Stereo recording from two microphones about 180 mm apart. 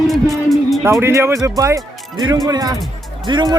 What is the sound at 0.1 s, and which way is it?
Music, centre (ahead or behind).